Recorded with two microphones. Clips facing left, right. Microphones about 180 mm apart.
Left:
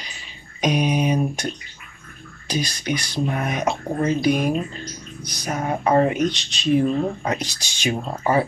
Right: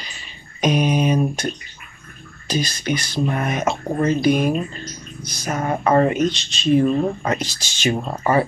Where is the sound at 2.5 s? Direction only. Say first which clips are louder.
Right 2 dB; 15° left (ahead or behind).